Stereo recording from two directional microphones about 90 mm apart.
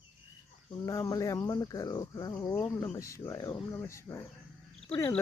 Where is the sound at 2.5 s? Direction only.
30° left (ahead or behind).